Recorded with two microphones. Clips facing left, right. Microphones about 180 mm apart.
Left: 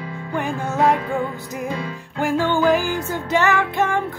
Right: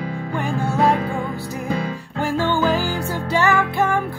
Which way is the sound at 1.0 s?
35° right (ahead or behind).